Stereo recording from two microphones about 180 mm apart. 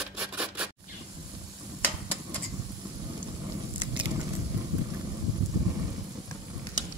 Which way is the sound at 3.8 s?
25° right (ahead or behind).